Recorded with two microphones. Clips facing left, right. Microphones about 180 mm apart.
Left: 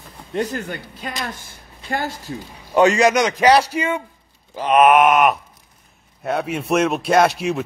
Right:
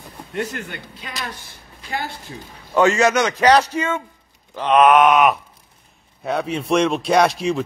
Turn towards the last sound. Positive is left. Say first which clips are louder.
# even
turn(degrees=0)  # may be behind; listen again after turning